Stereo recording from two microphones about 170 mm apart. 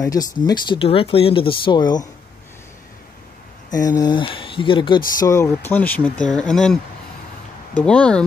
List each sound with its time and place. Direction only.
0.0 s speech: 20° left (ahead or behind)
3.7 s speech: 20° left (ahead or behind); by 8.2 s 5° left (ahead or behind)